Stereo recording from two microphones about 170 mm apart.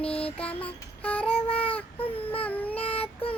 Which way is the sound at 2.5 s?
10° left (ahead or behind).